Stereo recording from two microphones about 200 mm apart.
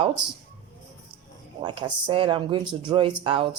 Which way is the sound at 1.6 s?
20° right (ahead or behind).